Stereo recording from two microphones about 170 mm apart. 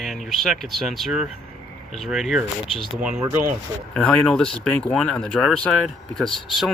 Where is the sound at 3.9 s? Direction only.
5° left (ahead or behind).